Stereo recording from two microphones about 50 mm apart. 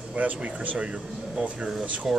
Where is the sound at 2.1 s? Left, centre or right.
Centre.